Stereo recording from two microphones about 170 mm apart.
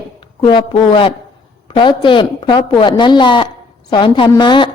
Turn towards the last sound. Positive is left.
turn(degrees=25)  # may be behind; listen again after turning